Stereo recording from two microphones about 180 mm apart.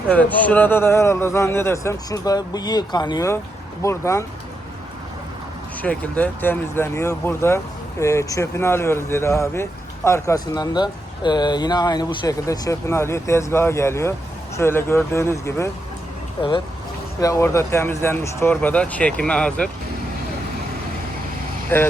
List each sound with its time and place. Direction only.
0.1 s speech: 10° left (ahead or behind)
5.8 s speech: 10° left (ahead or behind)
17.2 s speech: 20° left (ahead or behind)
21.7 s speech: 10° left (ahead or behind)